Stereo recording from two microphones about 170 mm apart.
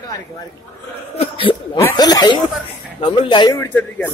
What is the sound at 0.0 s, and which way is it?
Speech, 20° left (ahead or behind).